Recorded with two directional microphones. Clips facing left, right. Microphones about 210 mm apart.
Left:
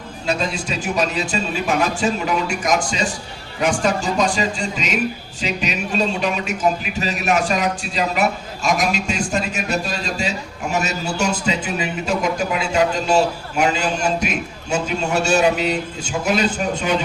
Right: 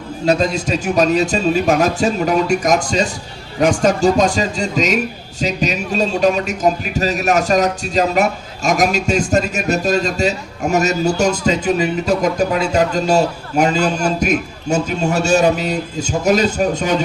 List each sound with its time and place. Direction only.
0.3 s a man's voice: 40° right (ahead or behind)